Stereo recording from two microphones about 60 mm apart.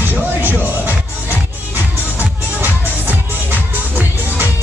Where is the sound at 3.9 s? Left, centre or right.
Right.